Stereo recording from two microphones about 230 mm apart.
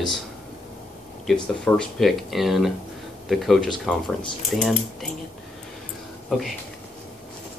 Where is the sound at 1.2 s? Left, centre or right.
Centre.